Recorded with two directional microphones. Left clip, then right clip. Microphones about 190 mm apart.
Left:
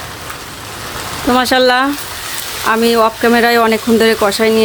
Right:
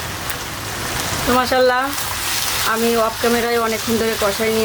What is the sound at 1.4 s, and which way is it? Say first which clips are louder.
Speech: left 5 dB; 60° left (ahead or behind).